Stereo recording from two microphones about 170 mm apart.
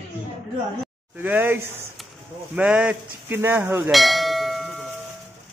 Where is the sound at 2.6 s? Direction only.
5° right (ahead or behind).